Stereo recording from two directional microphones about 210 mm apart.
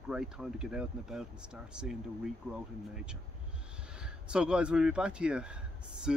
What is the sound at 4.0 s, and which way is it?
Speech, 5° right (ahead or behind).